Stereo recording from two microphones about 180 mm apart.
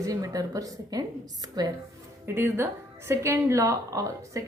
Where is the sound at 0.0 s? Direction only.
20° right (ahead or behind).